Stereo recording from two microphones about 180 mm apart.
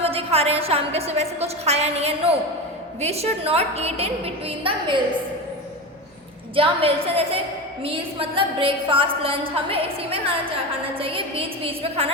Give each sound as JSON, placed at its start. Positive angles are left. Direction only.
{"t": 0.0, "sound": "a woman's voice", "side_deg": -35}
{"t": 6.6, "sound": "a woman's voice", "side_deg": -30}